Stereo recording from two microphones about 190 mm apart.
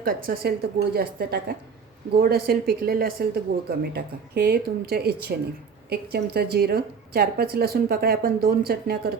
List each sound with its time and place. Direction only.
0.0 s a woman's voice: 55° right (ahead or behind)